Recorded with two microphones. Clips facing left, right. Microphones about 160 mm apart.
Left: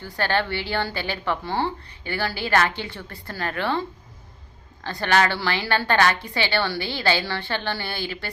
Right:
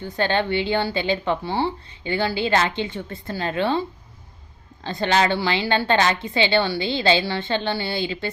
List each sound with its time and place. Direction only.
0.0 s a woman's voice: 20° right (ahead or behind)